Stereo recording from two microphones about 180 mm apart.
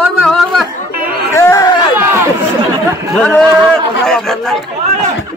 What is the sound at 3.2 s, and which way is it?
Speech, 5° left (ahead or behind).